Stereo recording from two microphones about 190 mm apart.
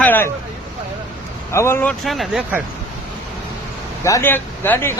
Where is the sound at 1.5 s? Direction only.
15° left (ahead or behind); by 2.6 s 5° right (ahead or behind).